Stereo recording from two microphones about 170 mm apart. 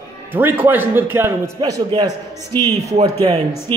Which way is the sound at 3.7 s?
25° right (ahead or behind).